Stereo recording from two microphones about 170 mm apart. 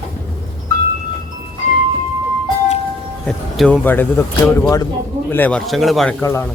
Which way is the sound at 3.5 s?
5° left (ahead or behind).